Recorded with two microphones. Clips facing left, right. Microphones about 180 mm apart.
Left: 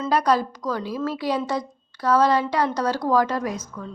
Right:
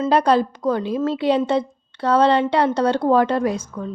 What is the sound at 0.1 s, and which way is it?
A woman's voice, 25° right (ahead or behind).